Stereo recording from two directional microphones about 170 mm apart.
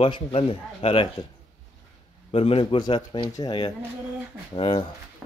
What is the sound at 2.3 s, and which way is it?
Speech, 35° left (ahead or behind).